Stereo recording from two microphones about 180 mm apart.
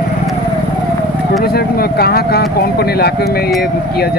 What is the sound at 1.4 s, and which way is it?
Speech, 60° left (ahead or behind).